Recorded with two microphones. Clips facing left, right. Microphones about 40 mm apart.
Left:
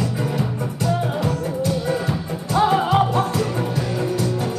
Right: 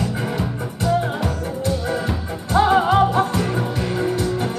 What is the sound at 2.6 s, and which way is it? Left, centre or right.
Music, centre.